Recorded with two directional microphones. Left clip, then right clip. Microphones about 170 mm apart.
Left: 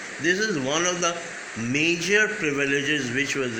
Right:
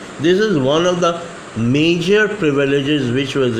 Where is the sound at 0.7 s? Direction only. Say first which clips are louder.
Right 9 dB; 30° right (ahead or behind).